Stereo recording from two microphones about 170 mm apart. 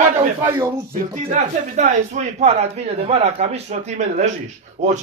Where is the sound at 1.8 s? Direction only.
40° right (ahead or behind).